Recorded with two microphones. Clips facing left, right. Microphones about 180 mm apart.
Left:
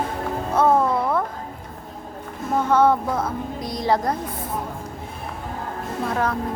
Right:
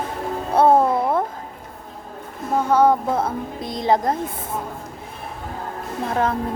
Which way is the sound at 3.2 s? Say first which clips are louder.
Right 2 dB; 25° right (ahead or behind).